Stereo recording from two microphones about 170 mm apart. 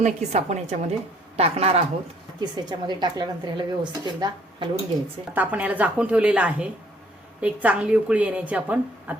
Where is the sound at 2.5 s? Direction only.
25° right (ahead or behind).